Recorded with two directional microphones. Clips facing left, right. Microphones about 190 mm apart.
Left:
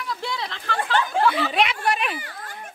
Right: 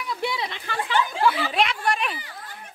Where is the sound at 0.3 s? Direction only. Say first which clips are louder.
Left 1 dB; 10° right (ahead or behind).